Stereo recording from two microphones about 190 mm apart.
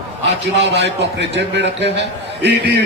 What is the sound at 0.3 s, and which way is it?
A man's voice, 65° right (ahead or behind).